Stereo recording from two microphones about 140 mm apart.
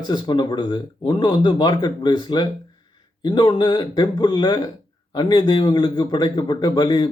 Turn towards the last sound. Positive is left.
turn(degrees=30)  # may be behind; listen again after turning